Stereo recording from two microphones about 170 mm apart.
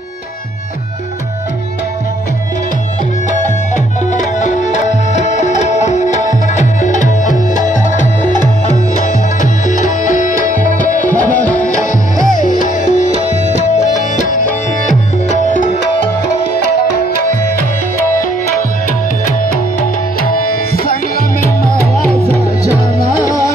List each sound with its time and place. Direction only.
3.7 s music: 45° left (ahead or behind)
9.7 s music: 45° left (ahead or behind)
20.2 s tabla: 60° left (ahead or behind)